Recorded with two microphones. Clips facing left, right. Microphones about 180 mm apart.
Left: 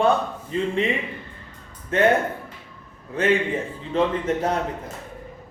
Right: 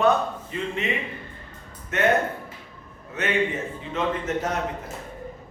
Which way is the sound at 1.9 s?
30° left (ahead or behind).